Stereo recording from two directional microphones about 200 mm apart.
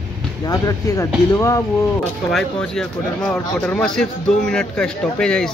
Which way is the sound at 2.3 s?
5° left (ahead or behind).